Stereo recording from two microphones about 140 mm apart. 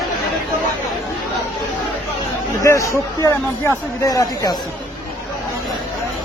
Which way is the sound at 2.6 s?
20° left (ahead or behind).